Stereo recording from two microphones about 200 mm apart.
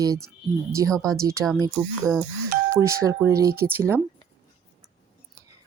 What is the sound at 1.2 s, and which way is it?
Speech, 15° right (ahead or behind).